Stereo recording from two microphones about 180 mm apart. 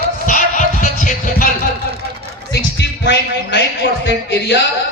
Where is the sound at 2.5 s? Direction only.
75° left (ahead or behind).